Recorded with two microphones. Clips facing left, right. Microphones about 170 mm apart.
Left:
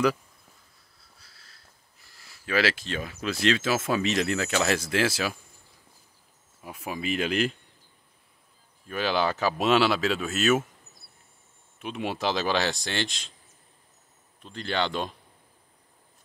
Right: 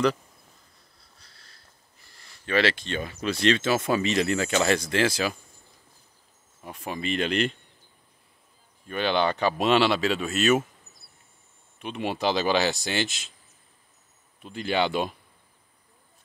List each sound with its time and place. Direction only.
1.2 s speech: 5° left (ahead or behind)
6.6 s speech: 5° left (ahead or behind)
8.8 s speech: 5° left (ahead or behind)
11.8 s speech: centre (ahead or behind)
14.4 s speech: 10° right (ahead or behind)